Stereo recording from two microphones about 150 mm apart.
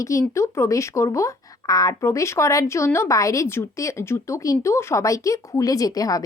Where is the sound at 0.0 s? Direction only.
20° left (ahead or behind).